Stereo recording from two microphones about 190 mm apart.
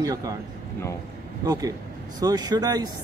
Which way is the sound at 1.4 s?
20° right (ahead or behind).